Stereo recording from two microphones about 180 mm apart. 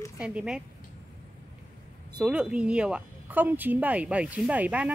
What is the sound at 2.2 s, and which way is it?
Speech, 5° right (ahead or behind).